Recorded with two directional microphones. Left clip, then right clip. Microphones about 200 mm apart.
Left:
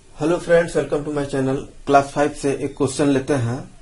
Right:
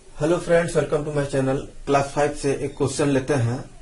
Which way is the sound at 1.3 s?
50° left (ahead or behind).